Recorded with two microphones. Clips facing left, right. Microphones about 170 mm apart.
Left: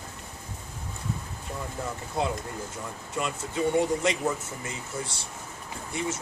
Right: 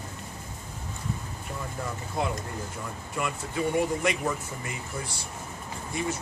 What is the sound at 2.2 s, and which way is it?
Speech, 20° left (ahead or behind).